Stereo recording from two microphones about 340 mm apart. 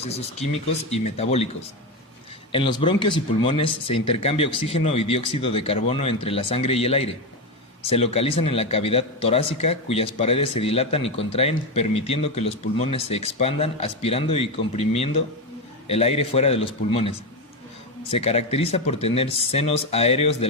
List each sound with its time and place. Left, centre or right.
0.0 s speech: centre
2.5 s speech: centre